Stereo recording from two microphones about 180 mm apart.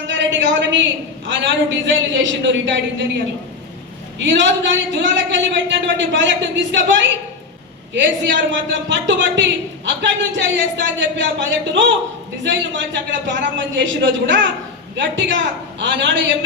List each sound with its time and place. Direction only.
0.1 s a woman's voice: 90° right
4.2 s a man's voice: 90° right